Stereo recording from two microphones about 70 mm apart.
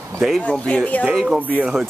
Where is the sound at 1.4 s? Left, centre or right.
Right.